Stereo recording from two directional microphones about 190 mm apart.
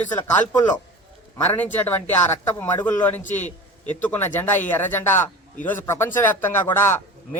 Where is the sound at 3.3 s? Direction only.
10° left (ahead or behind).